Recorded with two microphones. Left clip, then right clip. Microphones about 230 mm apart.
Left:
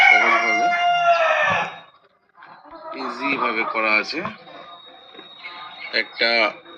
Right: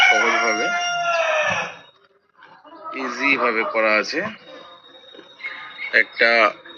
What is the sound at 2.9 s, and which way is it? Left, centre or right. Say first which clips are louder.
Speech: right 4 dB; right.